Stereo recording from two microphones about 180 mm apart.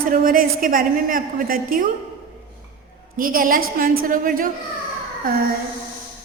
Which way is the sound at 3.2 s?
50° right (ahead or behind).